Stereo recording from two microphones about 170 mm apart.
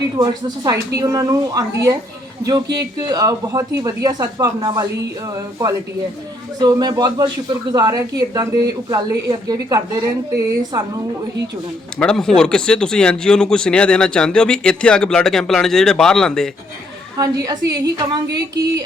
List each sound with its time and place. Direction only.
0.2 s speech: 20° right (ahead or behind)
11.9 s speech: 5° left (ahead or behind)
17.2 s speech: 20° right (ahead or behind)